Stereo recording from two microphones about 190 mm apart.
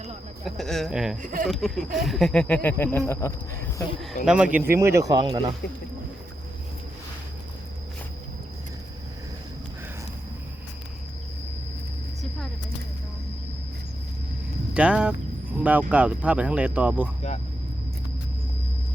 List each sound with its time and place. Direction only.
0.4 s speech: centre (ahead or behind)
1.2 s speech: 45° right (ahead or behind)
1.5 s speech: centre (ahead or behind)
2.6 s a sound: 10° left (ahead or behind)
4.3 s speech: 5° right (ahead or behind); by 5.5 s 20° right (ahead or behind)
14.7 s speech: 5° right (ahead or behind)